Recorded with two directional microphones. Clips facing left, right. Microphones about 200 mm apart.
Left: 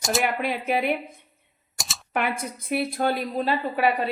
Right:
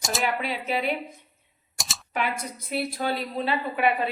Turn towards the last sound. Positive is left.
turn(degrees=45)  # may be behind; listen again after turning